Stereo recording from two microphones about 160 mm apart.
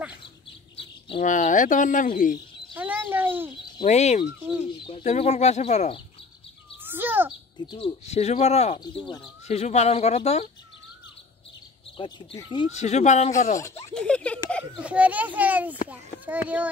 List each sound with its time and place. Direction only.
0.7 s bird: 35° left (ahead or behind)
1.2 s speech: 55° left (ahead or behind)
2.7 s speech: 10° right (ahead or behind)
3.8 s speech: 45° left (ahead or behind)
6.8 s bird: 10° right (ahead or behind)
7.5 s speech: 30° left (ahead or behind)
8.7 s speech: 30° left (ahead or behind)
9.5 s speech: 45° left (ahead or behind)
12.0 s speech: 30° left (ahead or behind)
12.7 s speech: 45° left (ahead or behind)
13.9 s speech: 5° left (ahead or behind)
14.6 s a child's voice: 10° right (ahead or behind)